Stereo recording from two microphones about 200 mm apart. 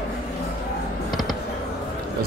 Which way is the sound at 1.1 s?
Centre (ahead or behind).